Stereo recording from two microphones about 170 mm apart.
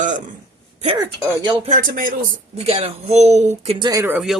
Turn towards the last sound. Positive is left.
turn(degrees=-10)  # may be behind; listen again after turning